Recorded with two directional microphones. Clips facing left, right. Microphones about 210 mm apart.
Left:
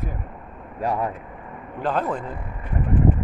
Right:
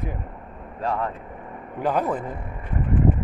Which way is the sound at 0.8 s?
15° left (ahead or behind).